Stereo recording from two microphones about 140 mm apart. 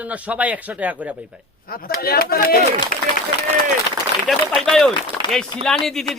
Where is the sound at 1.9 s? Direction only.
90° left.